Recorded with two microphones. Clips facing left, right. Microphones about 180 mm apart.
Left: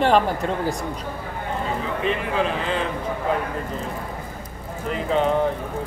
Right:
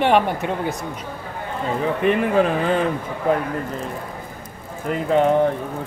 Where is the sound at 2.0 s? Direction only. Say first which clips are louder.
Right 6 dB; 50° right (ahead or behind).